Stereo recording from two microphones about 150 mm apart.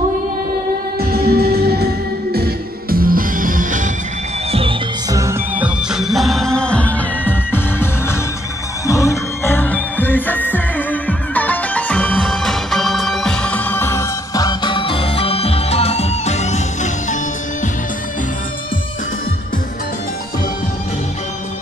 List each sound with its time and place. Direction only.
0.9 s music: 90° right; by 3.9 s 60° right (ahead or behind)
4.5 s music: 40° right (ahead or behind)
5.6 s music: 5° right (ahead or behind); by 17.2 s 50° left (ahead or behind)